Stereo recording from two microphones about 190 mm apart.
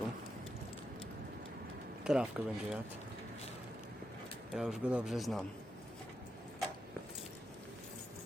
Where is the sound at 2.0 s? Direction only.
5° right (ahead or behind).